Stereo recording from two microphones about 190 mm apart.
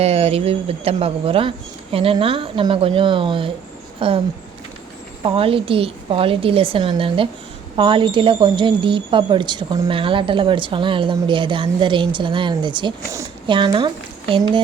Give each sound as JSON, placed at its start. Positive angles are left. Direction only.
{"t": 0.0, "sound": "speech", "side_deg": -30}
{"t": 5.2, "sound": "speech", "side_deg": -30}